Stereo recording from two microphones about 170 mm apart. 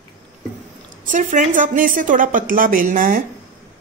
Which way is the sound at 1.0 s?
50° right (ahead or behind).